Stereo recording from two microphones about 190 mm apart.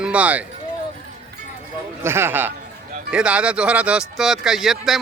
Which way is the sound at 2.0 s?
10° right (ahead or behind).